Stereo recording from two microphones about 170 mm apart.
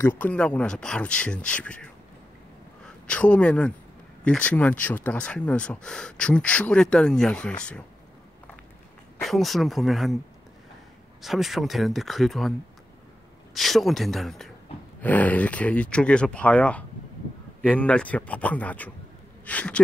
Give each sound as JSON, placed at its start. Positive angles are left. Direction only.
{"t": 0.2, "sound": "speech", "side_deg": 5}
{"t": 9.2, "sound": "speech", "side_deg": 0}
{"t": 11.2, "sound": "speech", "side_deg": 0}
{"t": 13.6, "sound": "speech", "side_deg": 0}